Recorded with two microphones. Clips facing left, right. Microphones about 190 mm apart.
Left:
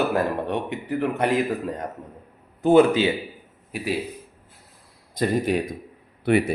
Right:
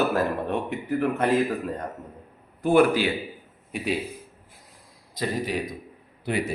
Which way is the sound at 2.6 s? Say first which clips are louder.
Left 3 dB; 20° left (ahead or behind).